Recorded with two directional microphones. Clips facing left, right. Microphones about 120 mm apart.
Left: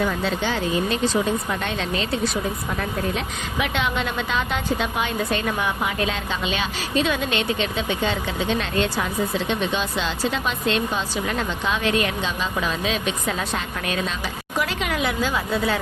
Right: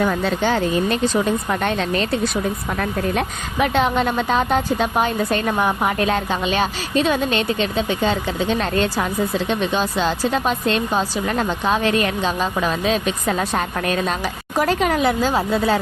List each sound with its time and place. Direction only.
0.0 s speech: 50° right (ahead or behind)
3.2 s a woman's voice: 40° right (ahead or behind)